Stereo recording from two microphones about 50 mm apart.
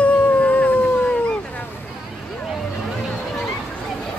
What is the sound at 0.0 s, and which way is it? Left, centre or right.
Howl, left.